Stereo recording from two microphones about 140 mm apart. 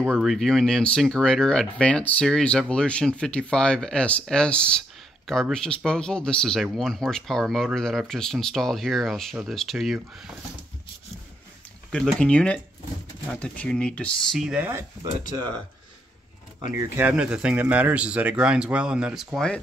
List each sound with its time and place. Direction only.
0.1 s speech: centre (ahead or behind)
11.9 s speech: 5° left (ahead or behind)
14.5 s speech: 15° right (ahead or behind)
16.7 s speech: 15° right (ahead or behind); by 19.6 s 5° left (ahead or behind)